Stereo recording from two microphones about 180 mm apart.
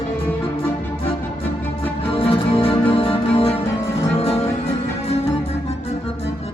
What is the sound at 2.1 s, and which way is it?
Music, 30° left (ahead or behind).